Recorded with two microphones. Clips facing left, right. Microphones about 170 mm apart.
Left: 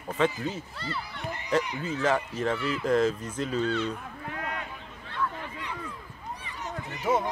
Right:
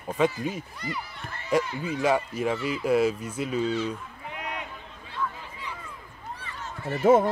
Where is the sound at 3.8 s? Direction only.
20° right (ahead or behind).